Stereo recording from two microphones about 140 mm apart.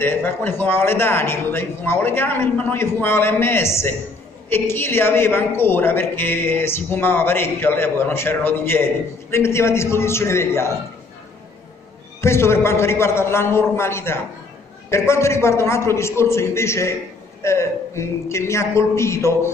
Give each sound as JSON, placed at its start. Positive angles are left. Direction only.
{"t": 0.0, "sound": "a woman's voice", "side_deg": 15}
{"t": 12.2, "sound": "a woman's voice", "side_deg": 20}